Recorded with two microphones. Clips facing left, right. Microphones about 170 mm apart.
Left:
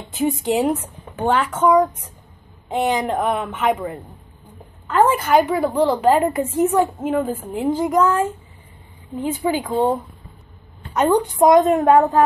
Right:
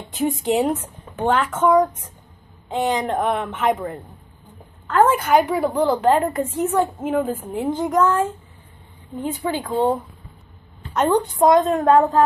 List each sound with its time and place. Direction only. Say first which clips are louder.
0.1 s a woman's voice: left 1 dB; 5° left (ahead or behind)